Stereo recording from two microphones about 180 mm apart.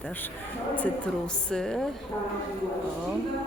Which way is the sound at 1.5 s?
5° left (ahead or behind).